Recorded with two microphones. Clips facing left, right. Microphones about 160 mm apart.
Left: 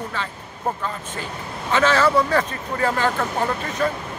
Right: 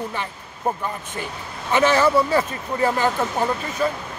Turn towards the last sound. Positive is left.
turn(degrees=-15)  # may be behind; listen again after turning